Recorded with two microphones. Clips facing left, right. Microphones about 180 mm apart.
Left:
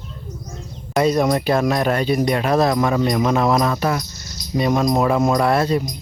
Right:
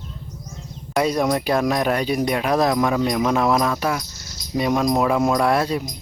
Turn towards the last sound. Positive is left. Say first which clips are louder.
# left 2 dB
turn(degrees=-10)  # may be behind; listen again after turning